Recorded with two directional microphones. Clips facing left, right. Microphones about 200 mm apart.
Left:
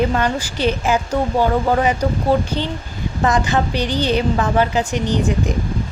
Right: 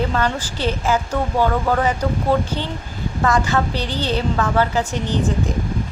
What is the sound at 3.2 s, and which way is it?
Speech, 20° left (ahead or behind).